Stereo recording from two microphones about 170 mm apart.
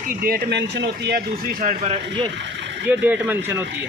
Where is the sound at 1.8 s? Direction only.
40° right (ahead or behind).